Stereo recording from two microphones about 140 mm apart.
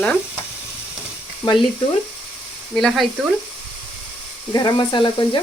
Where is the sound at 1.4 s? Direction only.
35° left (ahead or behind).